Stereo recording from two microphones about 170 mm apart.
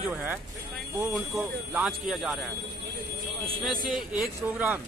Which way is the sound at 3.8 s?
5° right (ahead or behind).